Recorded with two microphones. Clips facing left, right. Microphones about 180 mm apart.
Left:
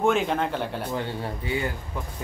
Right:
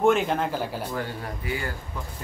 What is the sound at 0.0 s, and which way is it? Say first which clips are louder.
Speech: right 1 dB; centre (ahead or behind).